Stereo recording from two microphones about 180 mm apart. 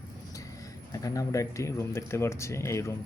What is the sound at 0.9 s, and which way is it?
Speech, 20° left (ahead or behind).